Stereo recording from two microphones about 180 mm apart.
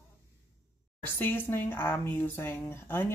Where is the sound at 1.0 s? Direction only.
10° left (ahead or behind).